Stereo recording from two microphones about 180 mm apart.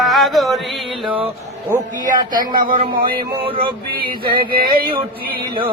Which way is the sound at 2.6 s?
50° right (ahead or behind).